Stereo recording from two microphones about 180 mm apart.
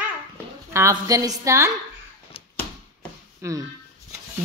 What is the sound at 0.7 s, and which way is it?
A child's voice, 15° right (ahead or behind).